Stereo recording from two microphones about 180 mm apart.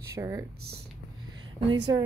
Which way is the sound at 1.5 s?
25° right (ahead or behind).